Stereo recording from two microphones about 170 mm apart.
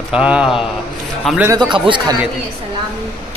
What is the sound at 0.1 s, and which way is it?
A man's voice, 5° right (ahead or behind).